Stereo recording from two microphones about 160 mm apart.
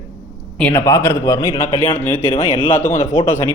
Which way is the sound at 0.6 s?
15° left (ahead or behind).